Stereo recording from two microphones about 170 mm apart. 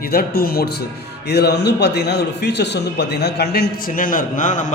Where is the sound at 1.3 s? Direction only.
75° left (ahead or behind).